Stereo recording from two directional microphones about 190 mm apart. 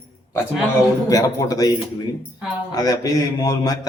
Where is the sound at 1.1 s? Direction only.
20° left (ahead or behind).